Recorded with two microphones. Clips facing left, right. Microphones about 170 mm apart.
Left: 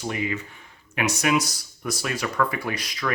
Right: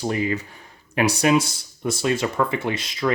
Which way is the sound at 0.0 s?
35° right (ahead or behind).